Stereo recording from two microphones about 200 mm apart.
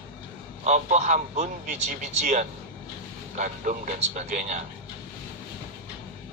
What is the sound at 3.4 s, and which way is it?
A man's voice, 40° right (ahead or behind).